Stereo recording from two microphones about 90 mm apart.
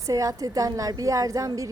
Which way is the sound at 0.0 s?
40° right (ahead or behind).